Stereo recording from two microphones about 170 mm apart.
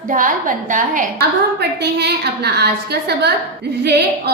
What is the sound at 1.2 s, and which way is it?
A woman's voice, 75° right (ahead or behind).